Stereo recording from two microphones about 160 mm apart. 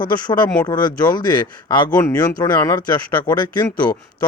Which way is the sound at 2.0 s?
15° left (ahead or behind).